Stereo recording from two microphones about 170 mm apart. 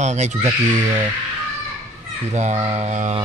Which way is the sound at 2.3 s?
45° right (ahead or behind).